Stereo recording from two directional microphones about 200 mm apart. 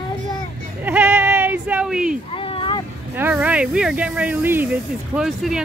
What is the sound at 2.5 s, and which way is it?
Boat, 25° left (ahead or behind).